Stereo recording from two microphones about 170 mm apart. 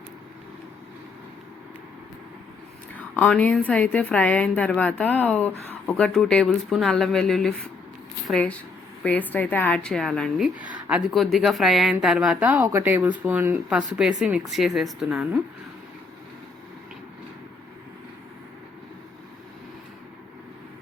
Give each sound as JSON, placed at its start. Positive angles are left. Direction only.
{"t": 2.9, "sound": "a woman's voice", "side_deg": 5}